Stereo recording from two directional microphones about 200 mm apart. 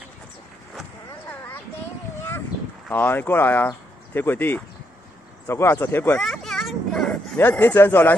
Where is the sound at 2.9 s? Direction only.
10° left (ahead or behind).